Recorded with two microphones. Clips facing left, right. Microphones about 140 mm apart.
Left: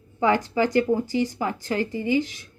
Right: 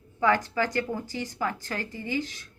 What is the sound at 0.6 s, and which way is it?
Speech, 15° left (ahead or behind).